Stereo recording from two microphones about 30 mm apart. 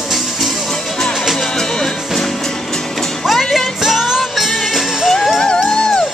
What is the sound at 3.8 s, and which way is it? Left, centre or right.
Music, centre.